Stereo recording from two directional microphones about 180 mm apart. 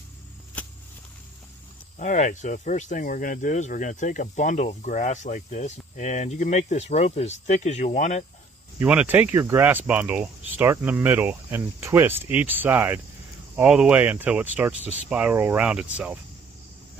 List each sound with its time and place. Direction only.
0.6 s vehicle: 10° left (ahead or behind)
2.0 s speech: 45° left (ahead or behind)
8.8 s speech: 10° right (ahead or behind)